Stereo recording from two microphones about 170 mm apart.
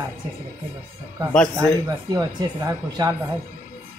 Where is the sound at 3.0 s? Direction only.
25° right (ahead or behind).